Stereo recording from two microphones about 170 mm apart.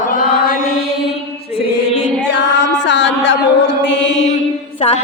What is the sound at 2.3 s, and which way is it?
Music, 90° left.